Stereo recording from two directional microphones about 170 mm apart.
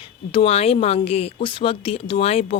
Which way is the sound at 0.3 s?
35° left (ahead or behind).